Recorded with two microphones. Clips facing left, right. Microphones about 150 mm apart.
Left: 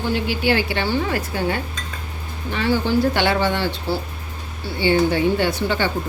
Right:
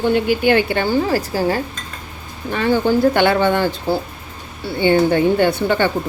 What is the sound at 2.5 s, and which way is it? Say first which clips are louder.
A woman's voice: right 3 dB; 50° right (ahead or behind).